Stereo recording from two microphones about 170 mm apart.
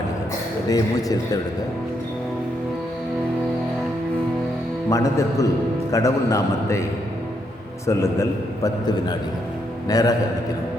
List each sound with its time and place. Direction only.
0.7 s a man's voice: 20° left (ahead or behind)
4.9 s a man's voice: 20° left (ahead or behind)
7.9 s a man's voice: 20° left (ahead or behind)